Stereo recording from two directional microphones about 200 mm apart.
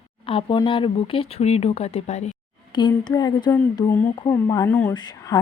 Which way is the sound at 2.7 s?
20° left (ahead or behind).